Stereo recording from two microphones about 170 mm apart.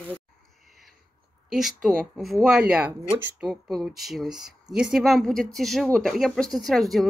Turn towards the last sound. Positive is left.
turn(degrees=0)  # may be behind; listen again after turning